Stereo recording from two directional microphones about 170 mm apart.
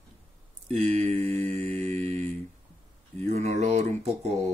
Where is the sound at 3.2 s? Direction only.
40° right (ahead or behind).